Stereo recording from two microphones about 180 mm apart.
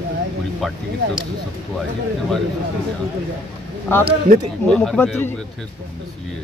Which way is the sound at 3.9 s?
10° left (ahead or behind).